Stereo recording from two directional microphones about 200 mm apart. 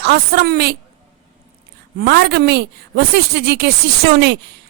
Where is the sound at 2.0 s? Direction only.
55° right (ahead or behind).